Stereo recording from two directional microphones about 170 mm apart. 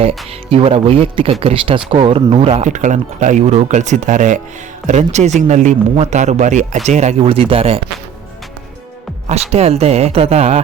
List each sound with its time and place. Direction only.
0.0 s speech: 35° right (ahead or behind)
9.3 s speech: 40° right (ahead or behind)